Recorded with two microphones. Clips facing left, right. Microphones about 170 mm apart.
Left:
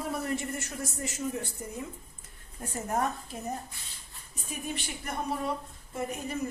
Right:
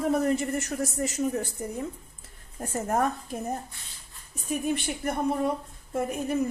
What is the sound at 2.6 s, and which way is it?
Speech, 45° right (ahead or behind).